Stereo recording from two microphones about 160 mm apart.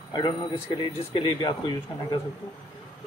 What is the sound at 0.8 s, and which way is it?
Speech, 30° left (ahead or behind).